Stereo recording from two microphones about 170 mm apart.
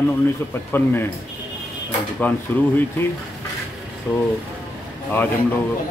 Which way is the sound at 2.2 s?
10° left (ahead or behind).